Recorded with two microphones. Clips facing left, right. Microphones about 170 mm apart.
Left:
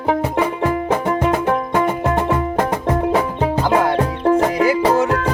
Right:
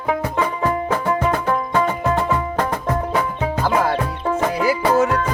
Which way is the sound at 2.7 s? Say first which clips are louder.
Left 3 dB; 30° left (ahead or behind).